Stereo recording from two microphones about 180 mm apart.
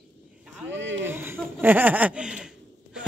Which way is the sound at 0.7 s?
90° right.